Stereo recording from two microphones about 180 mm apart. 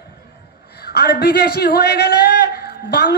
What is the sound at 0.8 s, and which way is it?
A man's voice, 60° left (ahead or behind).